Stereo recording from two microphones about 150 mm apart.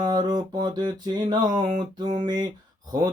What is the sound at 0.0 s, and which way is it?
Mantra, 25° right (ahead or behind).